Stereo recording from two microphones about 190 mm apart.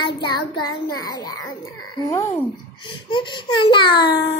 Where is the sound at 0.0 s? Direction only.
25° left (ahead or behind).